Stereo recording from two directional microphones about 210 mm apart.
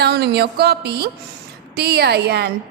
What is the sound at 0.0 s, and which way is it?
A woman's voice, 50° right (ahead or behind).